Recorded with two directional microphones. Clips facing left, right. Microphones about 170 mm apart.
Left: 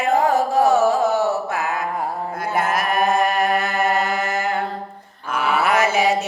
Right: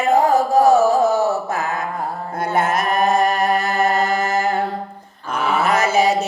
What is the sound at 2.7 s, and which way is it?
Music, 40° right (ahead or behind).